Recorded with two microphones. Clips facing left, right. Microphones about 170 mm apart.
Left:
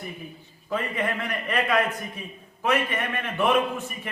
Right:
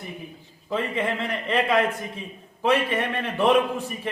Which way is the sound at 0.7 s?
25° right (ahead or behind).